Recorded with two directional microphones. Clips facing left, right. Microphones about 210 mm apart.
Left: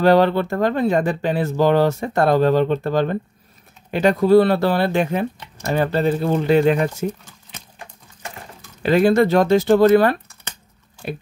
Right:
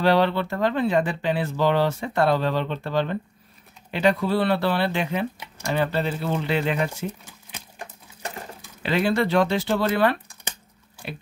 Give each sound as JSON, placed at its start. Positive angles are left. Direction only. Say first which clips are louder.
{"t": 0.0, "sound": "speech", "louder": "left 5 dB", "side_deg": 45}
{"t": 8.8, "sound": "speech", "louder": "left 7 dB", "side_deg": 45}